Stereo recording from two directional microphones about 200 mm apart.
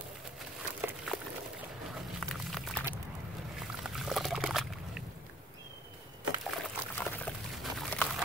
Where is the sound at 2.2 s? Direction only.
Centre (ahead or behind).